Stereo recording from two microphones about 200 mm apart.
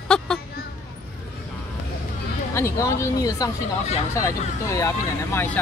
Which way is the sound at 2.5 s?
15° left (ahead or behind).